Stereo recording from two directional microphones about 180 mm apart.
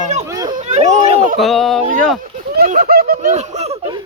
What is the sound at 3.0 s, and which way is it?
Speech, 45° right (ahead or behind).